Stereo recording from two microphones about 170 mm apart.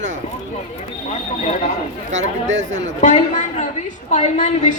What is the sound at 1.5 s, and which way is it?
Speech, 45° left (ahead or behind).